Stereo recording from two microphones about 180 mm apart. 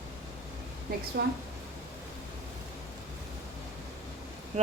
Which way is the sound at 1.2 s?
65° right (ahead or behind).